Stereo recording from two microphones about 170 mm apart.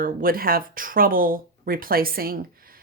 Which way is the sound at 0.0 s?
55° right (ahead or behind).